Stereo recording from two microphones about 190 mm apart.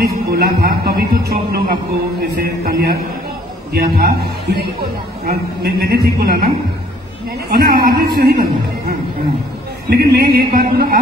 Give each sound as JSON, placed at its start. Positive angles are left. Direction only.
{"t": 0.3, "sound": "speech", "side_deg": -55}
{"t": 9.8, "sound": "speech", "side_deg": -55}